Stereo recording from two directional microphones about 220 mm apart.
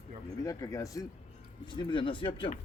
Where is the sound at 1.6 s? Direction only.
20° left (ahead or behind).